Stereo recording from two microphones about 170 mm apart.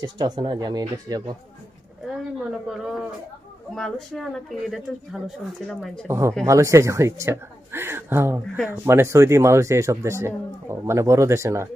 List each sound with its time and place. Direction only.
0.0 s speech: 25° right (ahead or behind)
2.6 s speech: centre (ahead or behind)
6.1 s speech: 15° right (ahead or behind)